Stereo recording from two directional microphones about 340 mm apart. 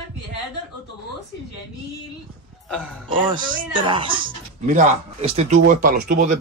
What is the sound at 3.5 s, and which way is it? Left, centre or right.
A man's voice, centre.